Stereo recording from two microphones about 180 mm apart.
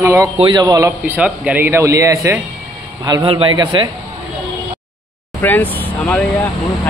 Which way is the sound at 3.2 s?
30° right (ahead or behind).